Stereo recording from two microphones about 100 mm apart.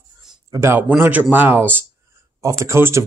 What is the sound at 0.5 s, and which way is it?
Speech, 25° right (ahead or behind).